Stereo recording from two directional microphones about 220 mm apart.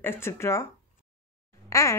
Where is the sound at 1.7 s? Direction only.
15° left (ahead or behind).